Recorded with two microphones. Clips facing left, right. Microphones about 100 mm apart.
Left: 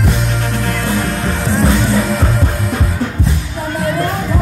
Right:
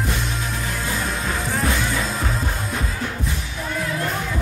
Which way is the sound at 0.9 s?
75° left (ahead or behind).